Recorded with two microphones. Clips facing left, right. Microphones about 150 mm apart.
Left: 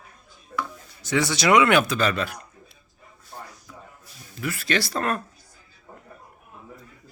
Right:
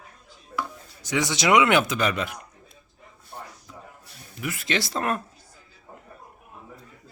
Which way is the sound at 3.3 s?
10° right (ahead or behind).